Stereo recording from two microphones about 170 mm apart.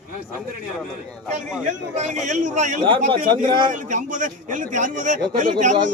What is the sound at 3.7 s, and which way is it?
A man's voice, 50° right (ahead or behind).